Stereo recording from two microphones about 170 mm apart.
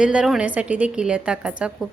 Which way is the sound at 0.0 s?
5° right (ahead or behind).